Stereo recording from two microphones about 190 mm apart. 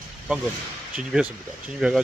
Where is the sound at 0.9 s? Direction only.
5° right (ahead or behind).